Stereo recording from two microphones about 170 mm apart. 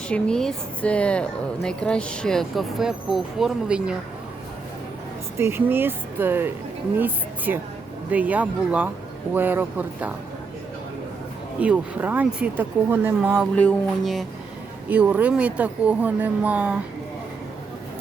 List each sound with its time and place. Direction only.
0.1 s speech: 5° left (ahead or behind)
5.4 s speech: 15° right (ahead or behind)
11.6 s speech: 10° right (ahead or behind)
13.6 s speech: 5° left (ahead or behind)